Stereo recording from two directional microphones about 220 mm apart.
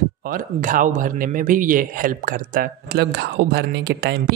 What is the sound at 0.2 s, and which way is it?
A man's voice, 40° right (ahead or behind).